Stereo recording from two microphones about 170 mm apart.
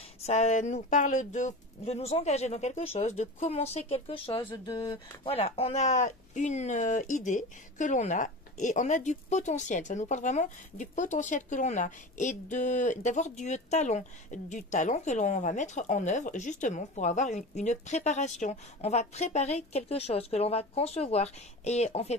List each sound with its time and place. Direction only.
0.3 s speech: 40° left (ahead or behind); by 5.3 s 25° left (ahead or behind)
5.3 s speech: 35° left (ahead or behind)